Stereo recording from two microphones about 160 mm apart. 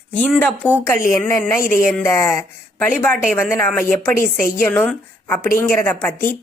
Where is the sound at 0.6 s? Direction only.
10° left (ahead or behind).